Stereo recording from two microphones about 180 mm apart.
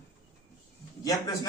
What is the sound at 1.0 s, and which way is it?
Speech, 20° left (ahead or behind).